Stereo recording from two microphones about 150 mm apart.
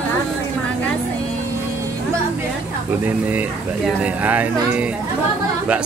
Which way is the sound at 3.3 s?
10° right (ahead or behind).